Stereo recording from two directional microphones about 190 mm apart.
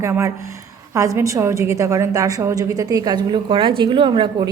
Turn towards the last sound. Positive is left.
turn(degrees=-25)  # may be behind; listen again after turning